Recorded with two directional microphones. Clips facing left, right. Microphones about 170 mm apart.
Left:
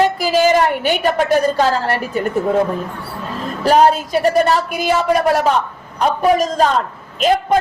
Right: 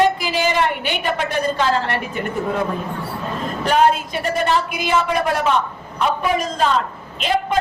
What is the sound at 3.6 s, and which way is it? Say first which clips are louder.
A woman's voice: left 4 dB; 35° left (ahead or behind).